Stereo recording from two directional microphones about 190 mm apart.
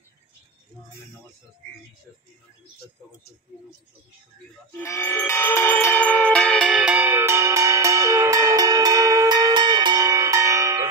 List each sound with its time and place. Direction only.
4.7 s bell: 15° left (ahead or behind); by 10.8 s 15° right (ahead or behind)